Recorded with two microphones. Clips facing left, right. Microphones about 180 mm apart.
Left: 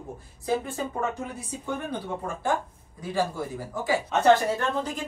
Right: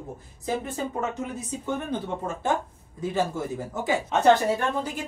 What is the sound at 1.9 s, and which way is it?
Speech, 25° right (ahead or behind).